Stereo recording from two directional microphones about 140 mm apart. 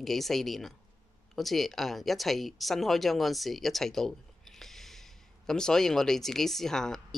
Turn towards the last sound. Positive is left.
turn(degrees=5)  # may be behind; listen again after turning